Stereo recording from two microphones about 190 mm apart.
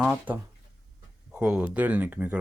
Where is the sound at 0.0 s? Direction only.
10° right (ahead or behind).